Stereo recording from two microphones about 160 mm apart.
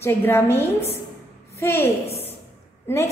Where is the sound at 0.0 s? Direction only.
15° left (ahead or behind).